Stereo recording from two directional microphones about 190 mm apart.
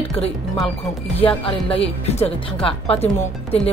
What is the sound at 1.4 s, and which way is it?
Speech, 30° left (ahead or behind).